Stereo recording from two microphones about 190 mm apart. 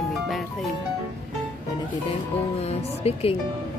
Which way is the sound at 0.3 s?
Centre (ahead or behind).